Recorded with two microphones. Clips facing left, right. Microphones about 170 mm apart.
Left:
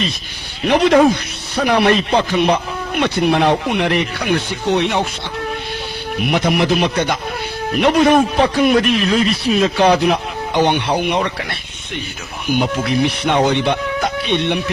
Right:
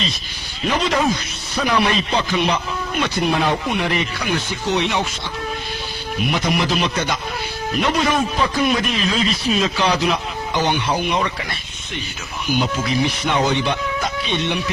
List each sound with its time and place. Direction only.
0.6 s a man's voice: 65° left (ahead or behind)
6.1 s a man's voice: 60° left (ahead or behind)
12.5 s a man's voice: 60° left (ahead or behind)